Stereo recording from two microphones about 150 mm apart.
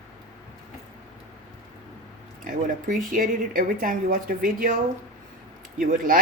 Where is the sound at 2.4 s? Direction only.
65° right (ahead or behind).